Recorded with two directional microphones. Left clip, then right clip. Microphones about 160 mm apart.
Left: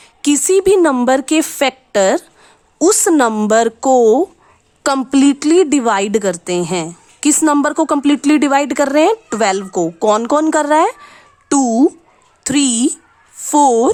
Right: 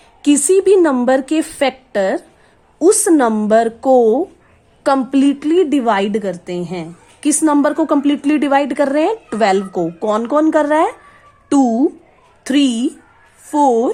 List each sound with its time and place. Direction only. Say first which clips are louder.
0.2 s a woman's voice: even; 25° left (ahead or behind)